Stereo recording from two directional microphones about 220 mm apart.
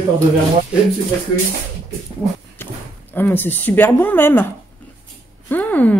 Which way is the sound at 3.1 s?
10° left (ahead or behind).